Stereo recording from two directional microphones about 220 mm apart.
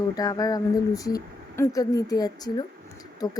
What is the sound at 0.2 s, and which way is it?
Speech, 15° left (ahead or behind).